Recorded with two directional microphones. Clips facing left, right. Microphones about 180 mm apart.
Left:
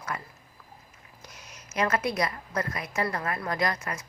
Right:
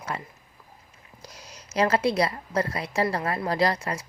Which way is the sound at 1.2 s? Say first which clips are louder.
Right 4 dB; 35° right (ahead or behind).